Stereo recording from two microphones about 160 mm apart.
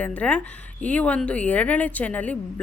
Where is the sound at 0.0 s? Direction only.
10° left (ahead or behind).